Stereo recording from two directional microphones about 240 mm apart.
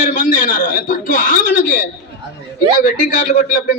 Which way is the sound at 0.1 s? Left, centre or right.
Left.